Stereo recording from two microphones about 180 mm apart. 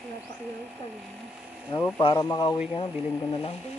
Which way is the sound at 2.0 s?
25° left (ahead or behind).